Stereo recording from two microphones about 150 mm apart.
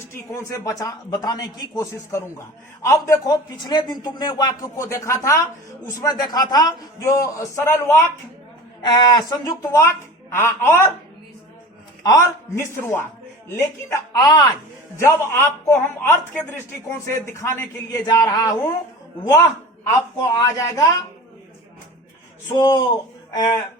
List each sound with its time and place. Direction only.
0.1 s a man's voice: 20° left (ahead or behind)
8.8 s a man's voice: 30° left (ahead or behind)
10.3 s a man's voice: 15° left (ahead or behind)
12.0 s a man's voice: 20° left (ahead or behind)
20.1 s a man's voice: 20° left (ahead or behind)
22.5 s a man's voice: 25° left (ahead or behind)